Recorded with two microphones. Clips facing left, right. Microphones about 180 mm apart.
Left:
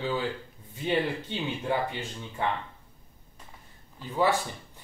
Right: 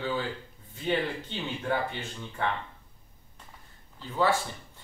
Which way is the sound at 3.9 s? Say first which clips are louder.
Left 1 dB; 15° left (ahead or behind).